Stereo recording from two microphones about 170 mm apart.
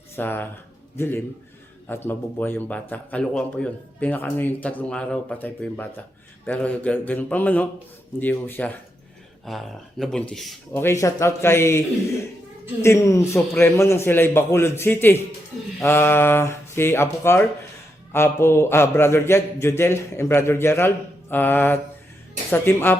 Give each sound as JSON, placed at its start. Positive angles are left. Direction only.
{"t": 0.2, "sound": "a man's voice", "side_deg": 10}
{"t": 10.7, "sound": "a man's voice", "side_deg": 15}
{"t": 12.8, "sound": "a man's voice", "side_deg": 15}